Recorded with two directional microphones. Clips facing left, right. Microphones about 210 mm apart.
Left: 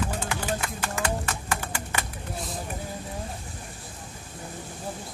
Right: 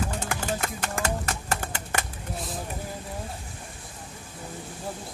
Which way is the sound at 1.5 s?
50° right (ahead or behind).